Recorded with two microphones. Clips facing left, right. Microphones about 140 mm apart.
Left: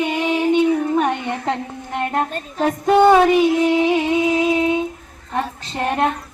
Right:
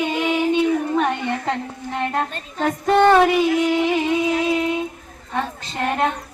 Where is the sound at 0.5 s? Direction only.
15° left (ahead or behind).